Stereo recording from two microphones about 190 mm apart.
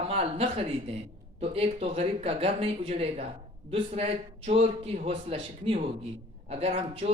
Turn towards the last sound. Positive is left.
turn(degrees=-30)  # may be behind; listen again after turning